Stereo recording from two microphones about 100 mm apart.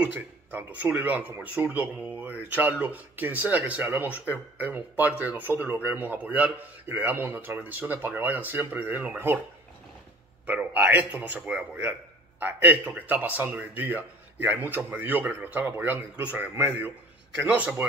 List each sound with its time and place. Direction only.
0.0 s speech: 15° right (ahead or behind)
10.4 s speech: 15° right (ahead or behind)